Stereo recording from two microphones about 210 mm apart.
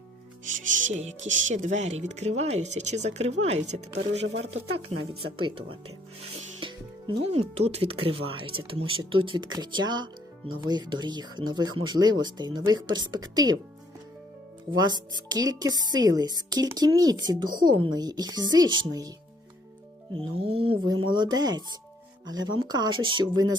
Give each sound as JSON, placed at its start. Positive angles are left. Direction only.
{"t": 1.3, "sound": "speech", "side_deg": -65}
{"t": 1.5, "sound": "speech", "side_deg": -35}
{"t": 6.6, "sound": "music", "side_deg": -20}
{"t": 7.3, "sound": "speech", "side_deg": -30}
{"t": 14.8, "sound": "speech", "side_deg": -20}
{"t": 20.1, "sound": "speech", "side_deg": -25}